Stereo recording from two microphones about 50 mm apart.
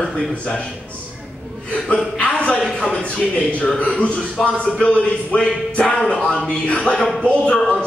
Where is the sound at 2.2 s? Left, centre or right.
Left.